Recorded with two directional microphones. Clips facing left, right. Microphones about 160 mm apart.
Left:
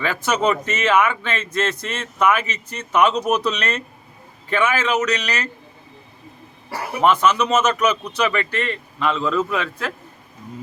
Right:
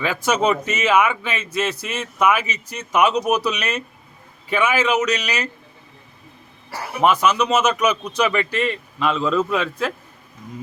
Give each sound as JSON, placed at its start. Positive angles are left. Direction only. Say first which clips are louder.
{"t": 0.0, "sound": "a man's voice", "louder": "right 1 dB", "side_deg": -15}
{"t": 7.0, "sound": "a man's voice", "louder": "even", "side_deg": -15}